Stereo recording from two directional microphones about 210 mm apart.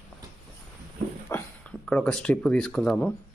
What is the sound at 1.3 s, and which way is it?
Speech, 5° left (ahead or behind).